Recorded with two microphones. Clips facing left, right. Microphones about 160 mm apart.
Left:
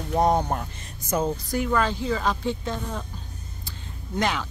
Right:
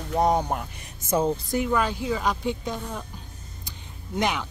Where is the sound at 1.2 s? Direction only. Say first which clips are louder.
Right 1 dB; 20° right (ahead or behind).